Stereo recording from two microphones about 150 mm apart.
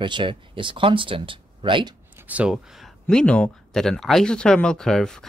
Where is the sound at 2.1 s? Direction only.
10° right (ahead or behind).